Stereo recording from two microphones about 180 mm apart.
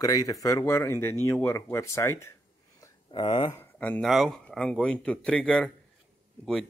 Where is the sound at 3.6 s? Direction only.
10° left (ahead or behind).